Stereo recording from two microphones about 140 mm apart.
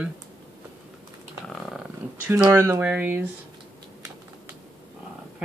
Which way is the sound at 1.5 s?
Centre (ahead or behind).